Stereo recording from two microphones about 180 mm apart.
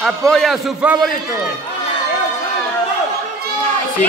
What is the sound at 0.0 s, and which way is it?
Speech, centre (ahead or behind).